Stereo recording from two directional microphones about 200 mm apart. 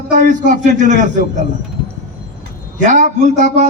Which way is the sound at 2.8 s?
35° right (ahead or behind).